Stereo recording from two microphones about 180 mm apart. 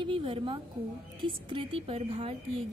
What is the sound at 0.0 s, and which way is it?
A woman's voice, 30° right (ahead or behind).